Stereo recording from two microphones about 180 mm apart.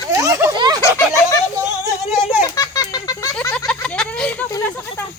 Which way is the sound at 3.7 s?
5° left (ahead or behind).